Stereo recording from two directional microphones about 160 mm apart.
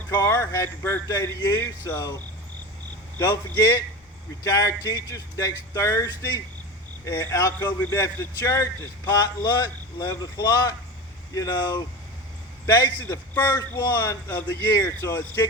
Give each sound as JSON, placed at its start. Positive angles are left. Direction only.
{"t": 0.1, "sound": "speech", "side_deg": 15}
{"t": 3.2, "sound": "speech", "side_deg": 15}